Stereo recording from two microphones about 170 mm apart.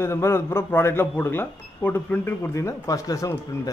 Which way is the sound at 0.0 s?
15° left (ahead or behind).